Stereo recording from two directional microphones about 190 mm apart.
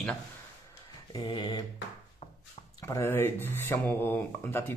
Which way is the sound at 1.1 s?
25° left (ahead or behind).